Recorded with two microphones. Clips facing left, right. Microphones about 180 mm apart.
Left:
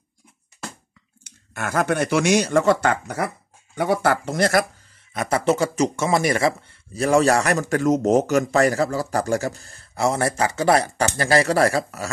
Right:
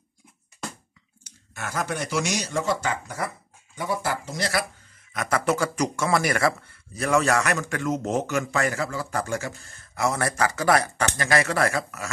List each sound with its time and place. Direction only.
1.5 s speech: 60° left (ahead or behind)
5.1 s a man's voice: 30° left (ahead or behind)